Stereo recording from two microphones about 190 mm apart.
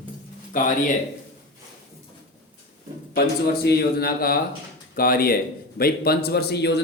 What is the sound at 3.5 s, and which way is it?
A man's voice, 55° left (ahead or behind).